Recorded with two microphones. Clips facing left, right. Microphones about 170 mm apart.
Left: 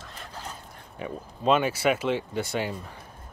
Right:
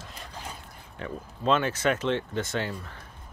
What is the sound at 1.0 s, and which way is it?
Speech, 15° left (ahead or behind).